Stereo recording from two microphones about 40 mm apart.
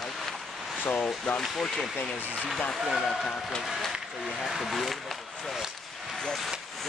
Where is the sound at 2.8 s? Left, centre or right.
Centre.